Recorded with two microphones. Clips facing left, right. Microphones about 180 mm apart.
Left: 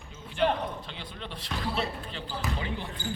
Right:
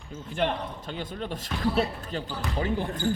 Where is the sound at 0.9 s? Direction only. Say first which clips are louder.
Right 8 dB; 45° right (ahead or behind).